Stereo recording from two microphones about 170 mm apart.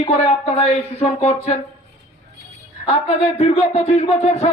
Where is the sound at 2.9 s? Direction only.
35° left (ahead or behind).